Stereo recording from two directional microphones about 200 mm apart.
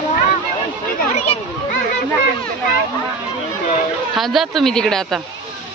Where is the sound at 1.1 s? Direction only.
35° left (ahead or behind).